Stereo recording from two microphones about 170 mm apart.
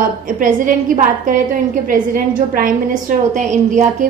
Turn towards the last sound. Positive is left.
turn(degrees=-45)  # may be behind; listen again after turning